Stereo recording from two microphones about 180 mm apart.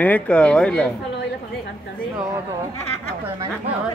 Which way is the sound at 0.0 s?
5° left (ahead or behind).